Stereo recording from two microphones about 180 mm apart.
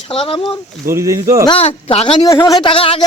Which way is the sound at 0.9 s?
15° right (ahead or behind).